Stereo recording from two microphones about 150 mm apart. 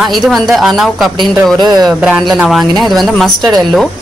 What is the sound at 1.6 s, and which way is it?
Speech, 30° right (ahead or behind).